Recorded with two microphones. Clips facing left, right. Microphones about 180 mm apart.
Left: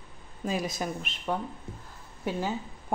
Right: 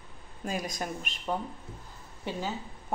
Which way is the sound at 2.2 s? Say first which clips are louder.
Left 4 dB; 10° left (ahead or behind).